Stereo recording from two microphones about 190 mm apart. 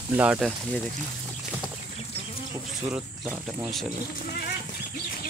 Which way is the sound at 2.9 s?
5° right (ahead or behind).